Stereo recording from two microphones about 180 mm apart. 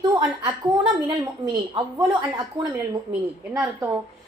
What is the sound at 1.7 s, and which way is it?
Speech, 25° right (ahead or behind).